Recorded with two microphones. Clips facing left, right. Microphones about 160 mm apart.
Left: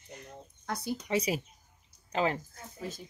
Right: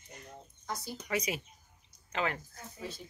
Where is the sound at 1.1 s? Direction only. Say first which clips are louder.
Left 3 dB; 30° left (ahead or behind).